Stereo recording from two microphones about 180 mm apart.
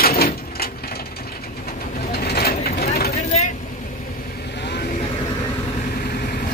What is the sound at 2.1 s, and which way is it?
Vehicle, 60° left (ahead or behind).